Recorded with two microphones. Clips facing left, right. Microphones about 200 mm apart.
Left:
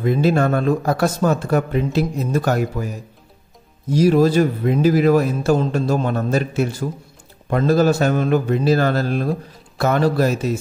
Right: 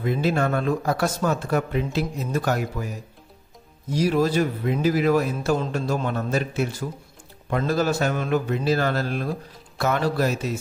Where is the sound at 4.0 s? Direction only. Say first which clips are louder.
Left 6 dB; 35° left (ahead or behind).